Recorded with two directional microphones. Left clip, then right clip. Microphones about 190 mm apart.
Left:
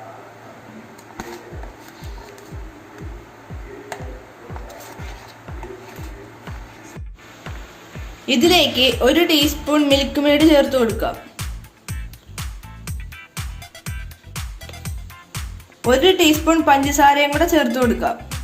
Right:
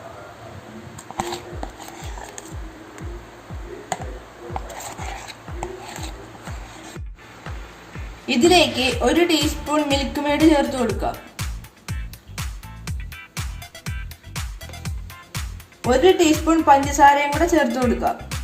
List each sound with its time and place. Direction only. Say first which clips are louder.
1.1 s a sound: right 7 dB; 45° right (ahead or behind)
8.3 s a woman's voice: left 1 dB; centre (ahead or behind)
12.4 s music: even; centre (ahead or behind)